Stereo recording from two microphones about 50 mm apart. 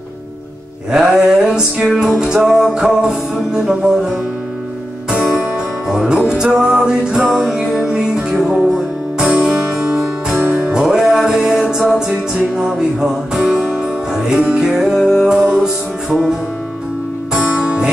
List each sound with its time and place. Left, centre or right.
0.9 s music: centre
5.9 s music: centre
10.7 s music: centre
17.6 s music: centre